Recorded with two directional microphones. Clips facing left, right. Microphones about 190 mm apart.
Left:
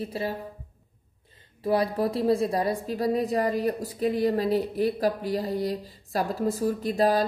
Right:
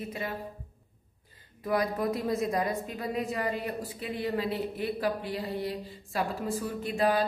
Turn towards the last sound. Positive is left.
turn(degrees=35)  # may be behind; listen again after turning